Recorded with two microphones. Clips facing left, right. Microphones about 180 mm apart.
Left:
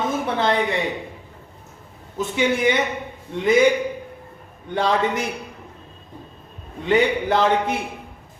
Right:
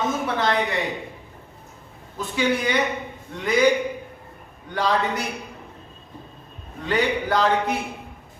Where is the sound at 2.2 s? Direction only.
25° left (ahead or behind).